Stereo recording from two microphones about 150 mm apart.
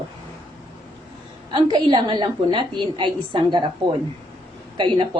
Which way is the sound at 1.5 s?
30° right (ahead or behind).